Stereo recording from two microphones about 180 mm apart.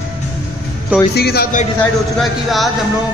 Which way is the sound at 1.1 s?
60° left (ahead or behind).